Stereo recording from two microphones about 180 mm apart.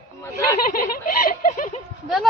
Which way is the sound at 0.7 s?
55° left (ahead or behind).